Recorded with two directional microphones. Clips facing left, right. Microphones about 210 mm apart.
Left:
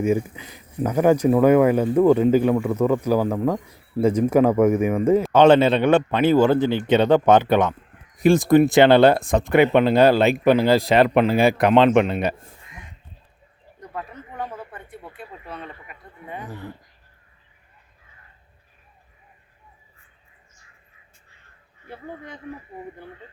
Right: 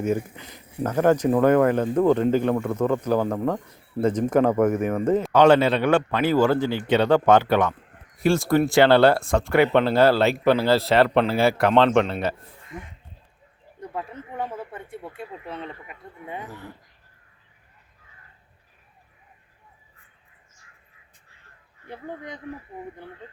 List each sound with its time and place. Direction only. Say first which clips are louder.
0.0 s speech: left 3 dB; 10° left (ahead or behind)
5.3 s a man's voice: left 2 dB; 25° left (ahead or behind)
14.1 s speech: right 1 dB; 25° right (ahead or behind)
21.8 s speech: right 1 dB; 15° right (ahead or behind)